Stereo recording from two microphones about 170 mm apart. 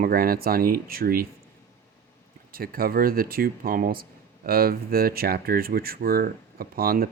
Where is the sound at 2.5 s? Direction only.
60° right (ahead or behind).